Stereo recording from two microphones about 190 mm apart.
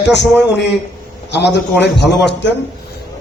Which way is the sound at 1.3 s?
65° left (ahead or behind).